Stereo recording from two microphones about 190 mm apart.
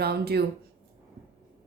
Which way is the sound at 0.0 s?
55° right (ahead or behind).